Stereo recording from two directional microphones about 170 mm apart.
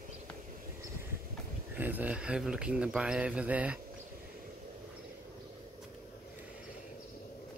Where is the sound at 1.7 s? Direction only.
10° right (ahead or behind).